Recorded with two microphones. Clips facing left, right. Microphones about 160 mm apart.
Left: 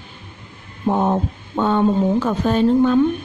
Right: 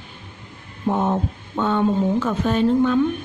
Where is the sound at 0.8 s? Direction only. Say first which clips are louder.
Left 3 dB; 40° left (ahead or behind).